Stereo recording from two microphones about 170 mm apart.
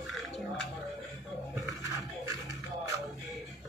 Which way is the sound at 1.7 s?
20° right (ahead or behind).